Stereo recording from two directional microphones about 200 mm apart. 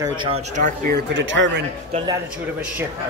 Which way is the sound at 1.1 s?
70° right (ahead or behind).